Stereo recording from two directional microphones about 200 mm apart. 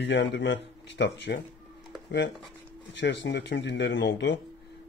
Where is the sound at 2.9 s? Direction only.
60° left (ahead or behind).